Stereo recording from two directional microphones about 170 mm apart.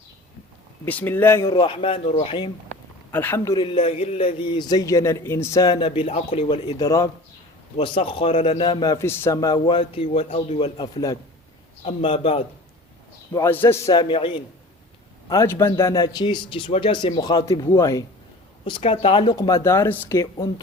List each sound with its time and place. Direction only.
0.9 s a man's voice: 10° left (ahead or behind)
1.5 s a man's voice: 30° left (ahead or behind)
3.1 s a man's voice: 10° left (ahead or behind)
3.8 s a man's voice: 35° left (ahead or behind)
6.7 s speech: 20° left (ahead or behind)
10.1 s a man's voice: 40° left (ahead or behind); by 11.2 s 25° left (ahead or behind)
11.9 s a man's voice: 35° left (ahead or behind)
13.3 s speech: 15° left (ahead or behind); by 14.4 s 30° left (ahead or behind)
15.3 s a man's voice: 20° left (ahead or behind)
18.6 s speech: 35° left (ahead or behind); by 20.5 s 15° left (ahead or behind)